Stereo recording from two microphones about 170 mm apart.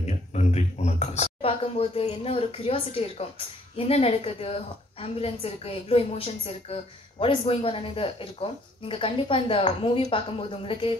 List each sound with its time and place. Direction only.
0.0 s a woman's voice: 40° left (ahead or behind)